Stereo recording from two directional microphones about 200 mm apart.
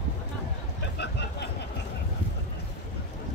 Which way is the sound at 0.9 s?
55° left (ahead or behind).